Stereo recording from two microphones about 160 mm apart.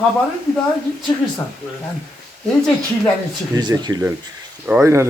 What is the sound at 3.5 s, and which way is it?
Speech, 25° right (ahead or behind).